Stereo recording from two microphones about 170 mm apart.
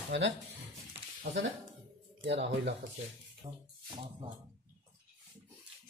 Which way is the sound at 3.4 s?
30° right (ahead or behind).